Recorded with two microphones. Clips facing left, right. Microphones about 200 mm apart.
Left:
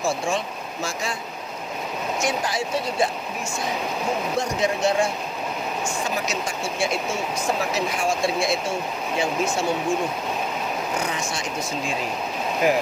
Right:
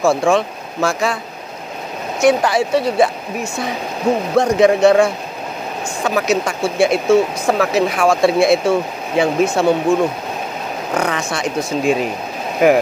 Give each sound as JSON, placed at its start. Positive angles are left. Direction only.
{"t": 0.0, "sound": "speech", "side_deg": -60}
{"t": 2.2, "sound": "speech", "side_deg": -65}
{"t": 4.4, "sound": "speech", "side_deg": -65}
{"t": 11.0, "sound": "speech", "side_deg": -60}